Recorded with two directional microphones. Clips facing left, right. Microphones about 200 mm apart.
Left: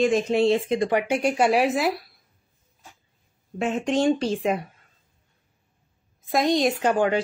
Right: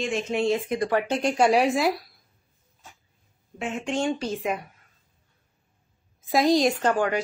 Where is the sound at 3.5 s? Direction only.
40° left (ahead or behind).